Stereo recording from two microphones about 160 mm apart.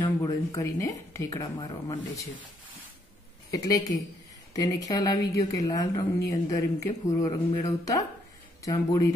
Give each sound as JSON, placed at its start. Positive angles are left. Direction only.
{"t": 0.0, "sound": "a woman's voice", "side_deg": 20}
{"t": 3.5, "sound": "a woman's voice", "side_deg": 20}